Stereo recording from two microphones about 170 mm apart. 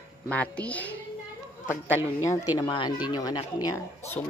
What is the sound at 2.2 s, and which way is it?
Speech, 25° left (ahead or behind).